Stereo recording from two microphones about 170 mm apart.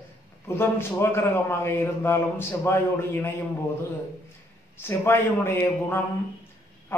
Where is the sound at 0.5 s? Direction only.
15° left (ahead or behind).